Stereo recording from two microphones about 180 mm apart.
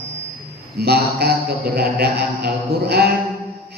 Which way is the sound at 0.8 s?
60° right (ahead or behind).